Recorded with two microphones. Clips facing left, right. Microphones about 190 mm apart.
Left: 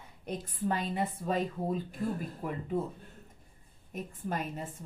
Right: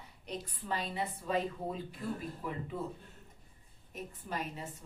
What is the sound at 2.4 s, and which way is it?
Speech, 50° left (ahead or behind).